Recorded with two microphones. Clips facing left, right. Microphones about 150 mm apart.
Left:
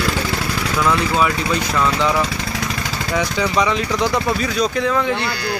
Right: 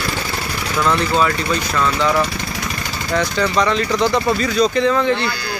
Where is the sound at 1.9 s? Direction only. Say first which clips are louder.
Right 3 dB; 20° left (ahead or behind).